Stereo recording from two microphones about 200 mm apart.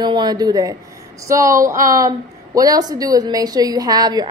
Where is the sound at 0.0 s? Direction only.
20° right (ahead or behind).